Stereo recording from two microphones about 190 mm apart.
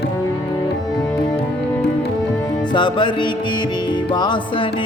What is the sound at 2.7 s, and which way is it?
Music, 25° left (ahead or behind).